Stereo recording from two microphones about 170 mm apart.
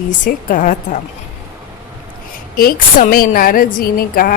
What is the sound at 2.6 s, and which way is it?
A woman's voice, 55° left (ahead or behind).